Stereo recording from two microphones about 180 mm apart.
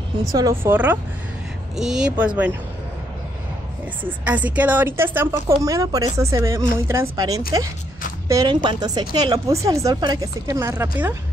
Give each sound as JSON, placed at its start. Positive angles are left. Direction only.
{"t": 0.3, "sound": "a woman's voice", "side_deg": -15}
{"t": 4.2, "sound": "a woman's voice", "side_deg": -10}